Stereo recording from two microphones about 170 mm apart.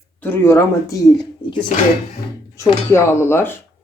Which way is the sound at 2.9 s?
15° left (ahead or behind).